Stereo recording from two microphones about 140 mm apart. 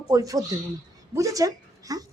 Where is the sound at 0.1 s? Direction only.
25° right (ahead or behind).